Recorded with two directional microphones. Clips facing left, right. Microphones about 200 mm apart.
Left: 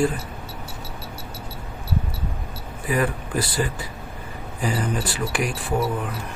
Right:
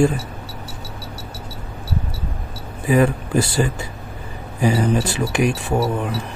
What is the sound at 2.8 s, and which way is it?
Speech, 25° right (ahead or behind).